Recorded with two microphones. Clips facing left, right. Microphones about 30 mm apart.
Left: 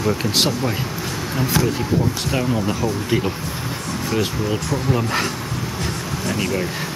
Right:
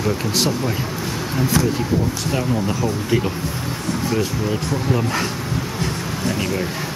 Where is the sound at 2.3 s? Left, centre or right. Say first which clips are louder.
Even; centre.